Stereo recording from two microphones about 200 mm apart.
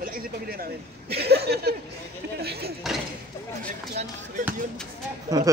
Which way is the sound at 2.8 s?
Centre (ahead or behind).